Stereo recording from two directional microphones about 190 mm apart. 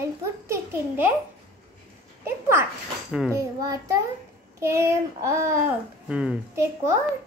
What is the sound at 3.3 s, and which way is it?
A child's voice, 15° right (ahead or behind).